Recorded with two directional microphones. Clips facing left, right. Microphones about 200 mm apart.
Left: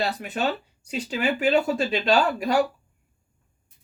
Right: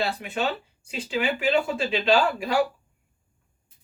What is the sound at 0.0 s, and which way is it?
Speech, 40° left (ahead or behind).